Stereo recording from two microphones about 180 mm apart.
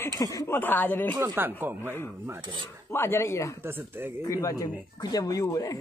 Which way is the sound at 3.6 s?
10° right (ahead or behind).